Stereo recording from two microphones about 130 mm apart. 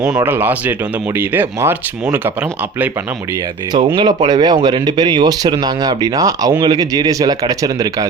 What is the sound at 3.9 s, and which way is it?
Speech, 35° right (ahead or behind).